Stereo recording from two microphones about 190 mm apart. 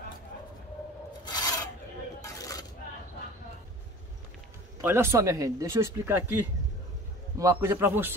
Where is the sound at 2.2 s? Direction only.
20° left (ahead or behind).